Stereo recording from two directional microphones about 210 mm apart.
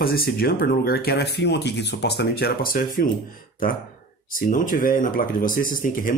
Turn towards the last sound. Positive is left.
turn(degrees=40)  # may be behind; listen again after turning